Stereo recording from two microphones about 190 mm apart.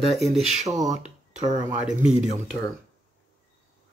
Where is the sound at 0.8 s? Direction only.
40° right (ahead or behind).